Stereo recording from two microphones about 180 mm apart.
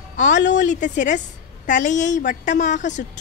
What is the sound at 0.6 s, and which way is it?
A woman's voice, 45° left (ahead or behind).